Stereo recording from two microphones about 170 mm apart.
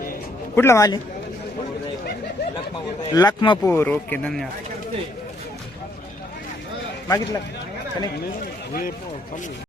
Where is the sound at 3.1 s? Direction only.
25° left (ahead or behind).